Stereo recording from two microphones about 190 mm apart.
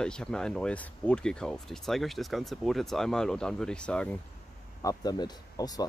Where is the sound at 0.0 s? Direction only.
5° left (ahead or behind).